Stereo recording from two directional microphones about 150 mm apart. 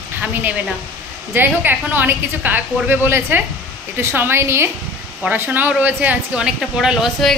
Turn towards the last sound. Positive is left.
turn(degrees=-5)  # may be behind; listen again after turning